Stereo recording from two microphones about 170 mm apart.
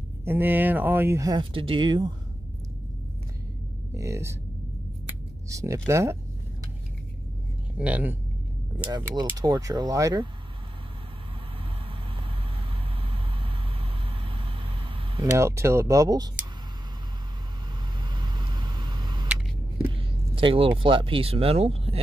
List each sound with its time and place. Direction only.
0.2 s speech: 10° right (ahead or behind)
3.9 s speech: 15° right (ahead or behind)
5.5 s speech: 20° right (ahead or behind)
7.7 s speech: 10° right (ahead or behind)
8.9 s speech: 25° right (ahead or behind)
13.0 s vehicle: 30° right (ahead or behind)
15.2 s speech: 15° right (ahead or behind)
18.0 s vehicle: 25° right (ahead or behind)
19.9 s speech: 30° right (ahead or behind)